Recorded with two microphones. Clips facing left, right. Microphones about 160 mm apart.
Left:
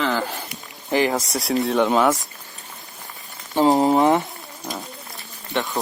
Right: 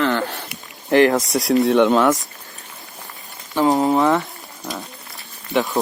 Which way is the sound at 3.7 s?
20° left (ahead or behind).